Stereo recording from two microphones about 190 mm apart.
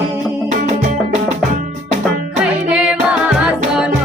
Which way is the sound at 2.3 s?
5° right (ahead or behind).